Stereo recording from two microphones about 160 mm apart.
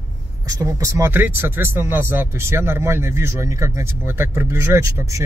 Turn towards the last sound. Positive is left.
turn(degrees=-20)  # may be behind; listen again after turning